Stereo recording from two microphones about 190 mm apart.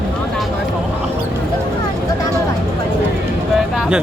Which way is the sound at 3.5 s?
Centre (ahead or behind).